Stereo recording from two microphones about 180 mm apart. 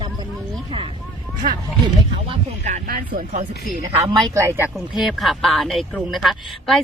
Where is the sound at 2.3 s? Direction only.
40° right (ahead or behind).